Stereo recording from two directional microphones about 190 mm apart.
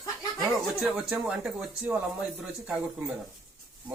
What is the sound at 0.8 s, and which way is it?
Speech, 5° right (ahead or behind).